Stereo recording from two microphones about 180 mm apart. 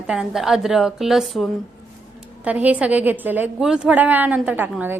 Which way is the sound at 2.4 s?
10° right (ahead or behind).